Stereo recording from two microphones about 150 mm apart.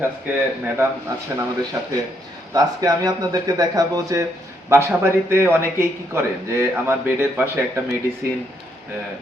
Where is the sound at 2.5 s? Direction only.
25° right (ahead or behind).